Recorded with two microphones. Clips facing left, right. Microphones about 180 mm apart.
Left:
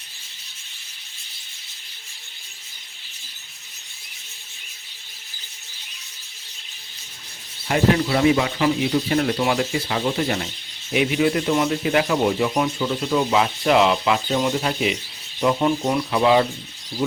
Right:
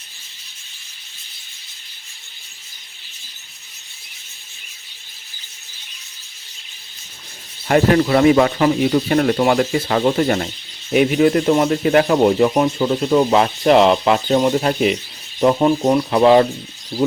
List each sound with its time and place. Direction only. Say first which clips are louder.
7.7 s speech: right 5 dB; 55° right (ahead or behind)